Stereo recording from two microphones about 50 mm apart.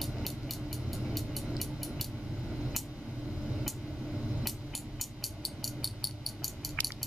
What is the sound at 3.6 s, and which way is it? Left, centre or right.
Music, centre.